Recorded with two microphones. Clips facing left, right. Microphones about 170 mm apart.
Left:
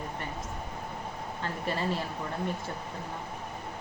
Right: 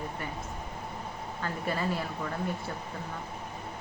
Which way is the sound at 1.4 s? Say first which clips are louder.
Even; 30° left (ahead or behind).